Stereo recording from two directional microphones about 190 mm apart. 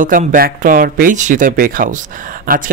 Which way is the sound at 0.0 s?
45° right (ahead or behind).